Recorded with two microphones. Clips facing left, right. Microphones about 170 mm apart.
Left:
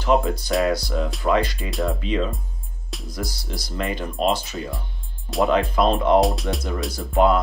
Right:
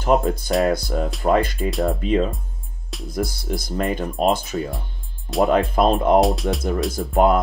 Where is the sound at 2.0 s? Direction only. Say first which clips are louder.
Right 4 dB; 50° right (ahead or behind).